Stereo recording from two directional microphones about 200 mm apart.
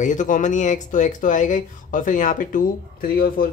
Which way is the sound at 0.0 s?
40° left (ahead or behind).